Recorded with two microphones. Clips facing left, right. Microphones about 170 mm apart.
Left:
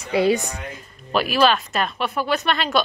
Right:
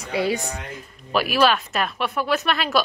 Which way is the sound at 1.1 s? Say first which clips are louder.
Left 1 dB; 5° right (ahead or behind).